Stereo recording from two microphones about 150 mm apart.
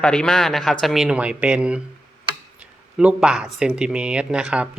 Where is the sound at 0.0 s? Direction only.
5° left (ahead or behind).